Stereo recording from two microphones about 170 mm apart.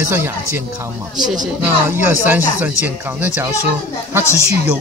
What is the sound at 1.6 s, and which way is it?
Speech, 10° right (ahead or behind).